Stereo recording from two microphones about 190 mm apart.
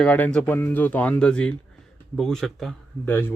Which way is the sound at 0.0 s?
5° left (ahead or behind).